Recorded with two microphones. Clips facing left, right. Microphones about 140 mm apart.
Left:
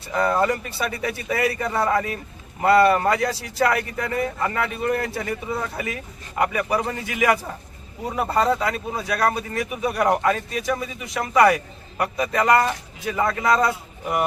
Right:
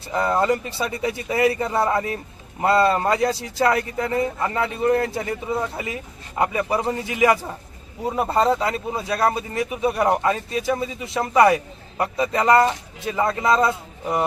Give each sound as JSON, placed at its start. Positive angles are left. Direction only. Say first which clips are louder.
{"t": 0.1, "sound": "speech", "louder": "right 1 dB", "side_deg": -25}